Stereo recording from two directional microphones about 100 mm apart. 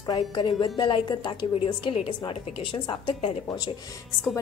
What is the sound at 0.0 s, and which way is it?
A woman's voice, 45° left (ahead or behind).